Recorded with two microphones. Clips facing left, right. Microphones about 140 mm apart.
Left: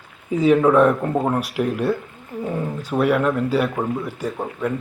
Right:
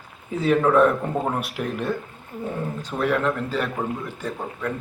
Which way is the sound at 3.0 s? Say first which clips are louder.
Left 4 dB; 10° left (ahead or behind).